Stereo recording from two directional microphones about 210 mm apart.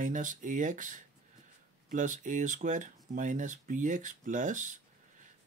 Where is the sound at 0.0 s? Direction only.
40° right (ahead or behind).